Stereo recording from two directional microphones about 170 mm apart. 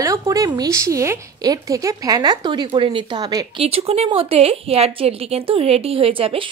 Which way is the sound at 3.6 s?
35° right (ahead or behind).